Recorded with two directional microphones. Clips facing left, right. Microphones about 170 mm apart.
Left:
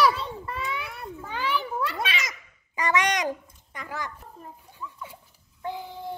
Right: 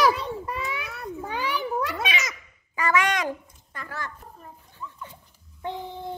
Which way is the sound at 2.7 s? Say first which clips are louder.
Right 1 dB; 20° left (ahead or behind).